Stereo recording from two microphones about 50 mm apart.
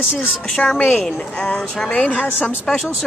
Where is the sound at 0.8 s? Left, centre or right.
Centre.